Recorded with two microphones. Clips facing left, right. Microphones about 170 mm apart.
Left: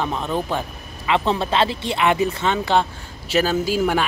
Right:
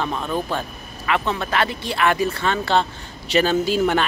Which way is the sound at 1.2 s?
30° left (ahead or behind).